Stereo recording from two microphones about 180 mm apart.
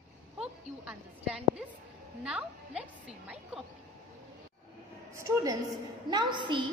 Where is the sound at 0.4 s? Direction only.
5° right (ahead or behind).